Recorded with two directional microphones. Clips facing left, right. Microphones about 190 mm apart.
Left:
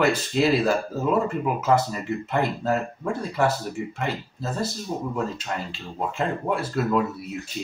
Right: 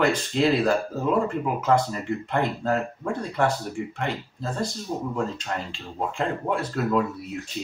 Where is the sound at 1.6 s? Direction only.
5° left (ahead or behind).